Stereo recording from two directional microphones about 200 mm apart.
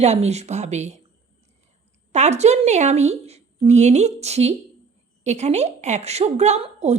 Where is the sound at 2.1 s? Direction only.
35° right (ahead or behind).